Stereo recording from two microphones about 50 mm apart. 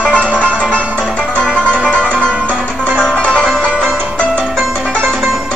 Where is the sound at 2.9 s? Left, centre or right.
Centre.